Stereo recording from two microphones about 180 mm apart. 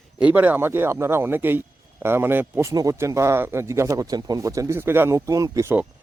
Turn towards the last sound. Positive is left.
turn(degrees=-10)  # may be behind; listen again after turning